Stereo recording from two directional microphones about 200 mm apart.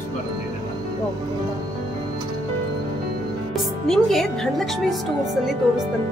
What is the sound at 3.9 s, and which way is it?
Speech, centre (ahead or behind).